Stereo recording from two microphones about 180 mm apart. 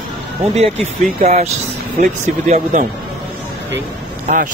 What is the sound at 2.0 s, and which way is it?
Speech, 40° right (ahead or behind).